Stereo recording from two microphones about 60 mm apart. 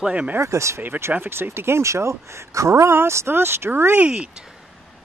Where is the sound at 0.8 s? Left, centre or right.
Right.